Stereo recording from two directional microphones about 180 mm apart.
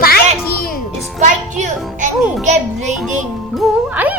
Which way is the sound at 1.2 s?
45° right (ahead or behind).